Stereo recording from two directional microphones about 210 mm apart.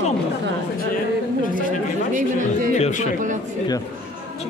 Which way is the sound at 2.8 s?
35° left (ahead or behind).